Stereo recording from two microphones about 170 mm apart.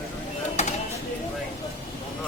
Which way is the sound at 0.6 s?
40° left (ahead or behind).